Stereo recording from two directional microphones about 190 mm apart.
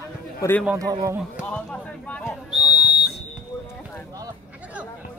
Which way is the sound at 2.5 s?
25° left (ahead or behind).